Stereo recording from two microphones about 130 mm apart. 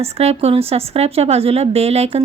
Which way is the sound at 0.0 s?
55° right (ahead or behind).